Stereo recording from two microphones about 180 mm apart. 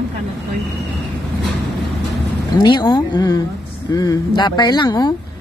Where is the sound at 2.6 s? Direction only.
25° left (ahead or behind).